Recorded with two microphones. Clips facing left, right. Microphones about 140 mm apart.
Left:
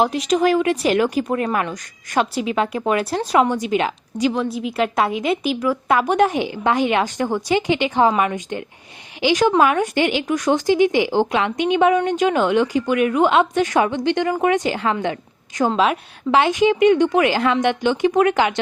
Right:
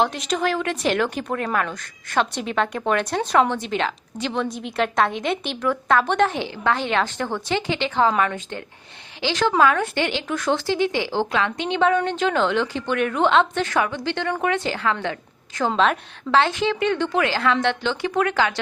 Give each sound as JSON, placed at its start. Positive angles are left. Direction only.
{"t": 0.0, "sound": "a woman's voice", "side_deg": 10}